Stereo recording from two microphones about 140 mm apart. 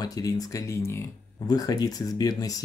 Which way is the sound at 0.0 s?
25° left (ahead or behind).